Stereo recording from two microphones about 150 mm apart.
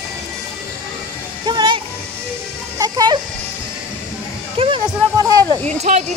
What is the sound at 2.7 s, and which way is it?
Sheep, 25° right (ahead or behind).